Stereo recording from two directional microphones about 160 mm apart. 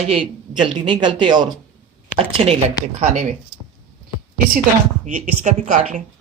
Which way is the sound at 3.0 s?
50° right (ahead or behind).